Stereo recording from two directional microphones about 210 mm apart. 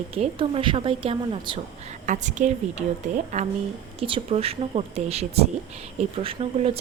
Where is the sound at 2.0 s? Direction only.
35° right (ahead or behind).